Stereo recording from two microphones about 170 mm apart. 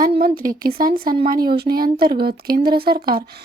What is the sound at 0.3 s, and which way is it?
Speech, 55° right (ahead or behind).